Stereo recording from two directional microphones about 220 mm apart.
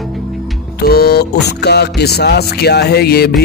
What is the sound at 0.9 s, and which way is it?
Speech, 45° left (ahead or behind).